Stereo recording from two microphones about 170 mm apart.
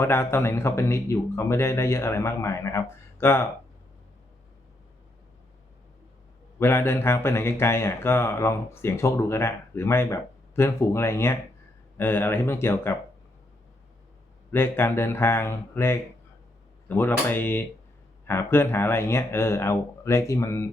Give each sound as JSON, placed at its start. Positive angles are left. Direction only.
{"t": 0.0, "sound": "a man's voice", "side_deg": 15}
{"t": 6.6, "sound": "a man's voice", "side_deg": 15}
{"t": 14.5, "sound": "a man's voice", "side_deg": 15}